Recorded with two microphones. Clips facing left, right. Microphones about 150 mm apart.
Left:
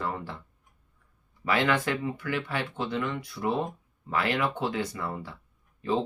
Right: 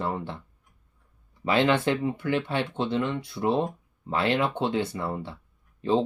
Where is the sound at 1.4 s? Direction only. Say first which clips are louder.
Right 4 dB; 25° right (ahead or behind).